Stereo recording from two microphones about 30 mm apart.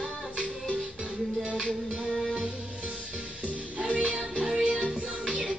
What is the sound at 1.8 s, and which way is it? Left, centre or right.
Music, centre.